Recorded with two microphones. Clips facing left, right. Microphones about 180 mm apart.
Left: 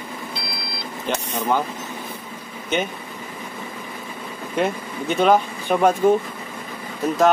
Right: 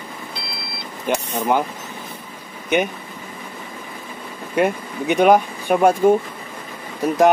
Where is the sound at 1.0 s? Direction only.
15° right (ahead or behind).